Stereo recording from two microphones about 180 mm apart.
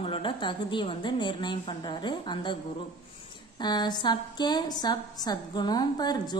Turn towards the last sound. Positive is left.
turn(degrees=25)  # may be behind; listen again after turning